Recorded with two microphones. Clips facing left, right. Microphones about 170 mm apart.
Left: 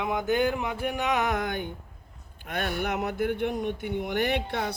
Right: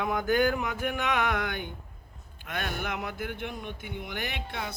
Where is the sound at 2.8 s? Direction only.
50° left (ahead or behind).